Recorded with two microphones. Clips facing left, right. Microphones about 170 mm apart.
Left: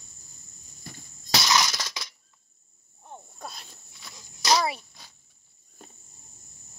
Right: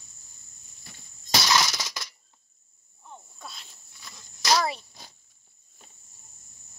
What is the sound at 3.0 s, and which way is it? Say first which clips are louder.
Sneeze: left 3 dB; 50° left (ahead or behind).